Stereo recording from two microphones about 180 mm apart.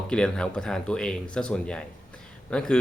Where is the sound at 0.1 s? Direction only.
5° left (ahead or behind).